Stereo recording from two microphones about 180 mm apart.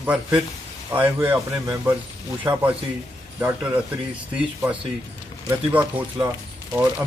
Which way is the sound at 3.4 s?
10° right (ahead or behind).